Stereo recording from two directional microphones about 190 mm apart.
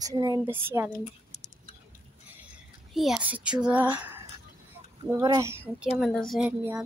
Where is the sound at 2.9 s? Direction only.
5° right (ahead or behind).